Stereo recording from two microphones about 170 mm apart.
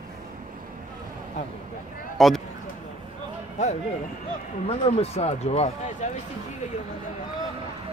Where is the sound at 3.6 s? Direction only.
45° left (ahead or behind).